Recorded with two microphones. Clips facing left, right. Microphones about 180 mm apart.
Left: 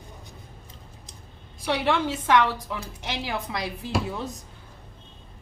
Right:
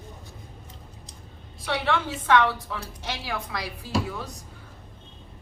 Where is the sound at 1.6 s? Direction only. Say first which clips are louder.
Left 2 dB; 20° left (ahead or behind).